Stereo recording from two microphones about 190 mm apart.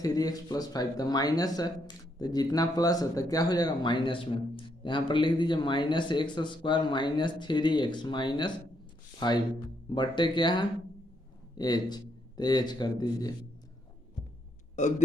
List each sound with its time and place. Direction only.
0.0 s speech: 20° left (ahead or behind)
14.8 s a man's voice: 40° left (ahead or behind)